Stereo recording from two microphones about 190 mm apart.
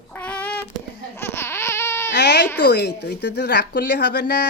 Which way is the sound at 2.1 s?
65° left (ahead or behind).